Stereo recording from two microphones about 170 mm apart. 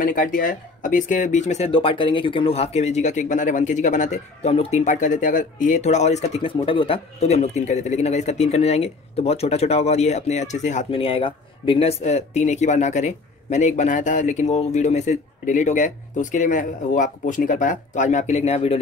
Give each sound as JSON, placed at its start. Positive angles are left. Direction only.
{"t": 0.0, "sound": "speech", "side_deg": 55}